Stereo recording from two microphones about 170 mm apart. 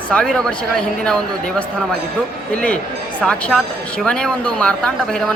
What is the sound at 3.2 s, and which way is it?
Speech, 5° left (ahead or behind).